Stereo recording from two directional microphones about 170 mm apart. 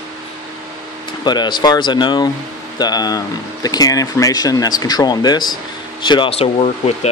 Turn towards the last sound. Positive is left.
turn(degrees=35)  # may be behind; listen again after turning